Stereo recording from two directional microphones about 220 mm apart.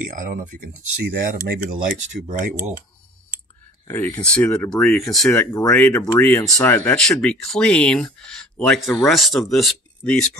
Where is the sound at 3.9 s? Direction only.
10° left (ahead or behind).